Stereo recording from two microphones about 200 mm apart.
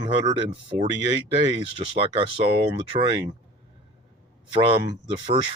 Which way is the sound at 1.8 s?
25° right (ahead or behind).